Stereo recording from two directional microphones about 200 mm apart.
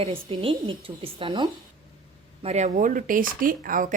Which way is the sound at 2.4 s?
35° right (ahead or behind).